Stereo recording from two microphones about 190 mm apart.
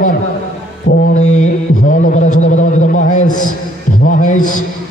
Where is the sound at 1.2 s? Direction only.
40° left (ahead or behind).